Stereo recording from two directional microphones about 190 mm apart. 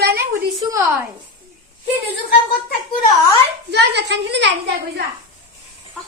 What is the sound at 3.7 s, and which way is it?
Speech, 65° right (ahead or behind).